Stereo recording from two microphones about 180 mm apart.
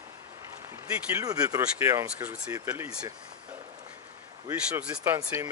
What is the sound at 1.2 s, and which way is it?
Speech, 20° right (ahead or behind).